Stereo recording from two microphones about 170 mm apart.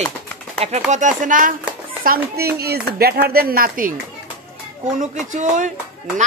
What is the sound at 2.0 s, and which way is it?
Speech, 65° right (ahead or behind).